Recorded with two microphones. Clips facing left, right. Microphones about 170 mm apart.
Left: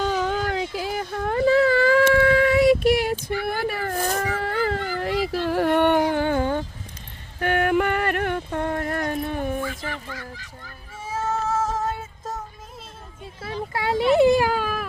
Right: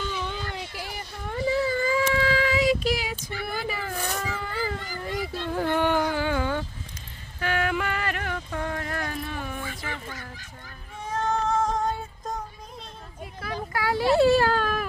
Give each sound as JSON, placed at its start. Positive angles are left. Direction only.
{"t": 0.0, "sound": "a sound", "side_deg": 40}
{"t": 0.3, "sound": "whimper", "side_deg": 90}
{"t": 4.2, "sound": "a sound", "side_deg": 60}
{"t": 7.3, "sound": "music", "side_deg": 55}
{"t": 11.0, "sound": "female singing", "side_deg": 5}
{"t": 13.4, "sound": "baby cry", "side_deg": 25}